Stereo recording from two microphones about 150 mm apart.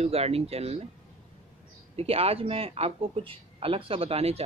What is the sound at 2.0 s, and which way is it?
A man's voice, 40° right (ahead or behind).